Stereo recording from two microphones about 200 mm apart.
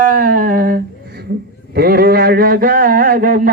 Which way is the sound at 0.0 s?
45° right (ahead or behind).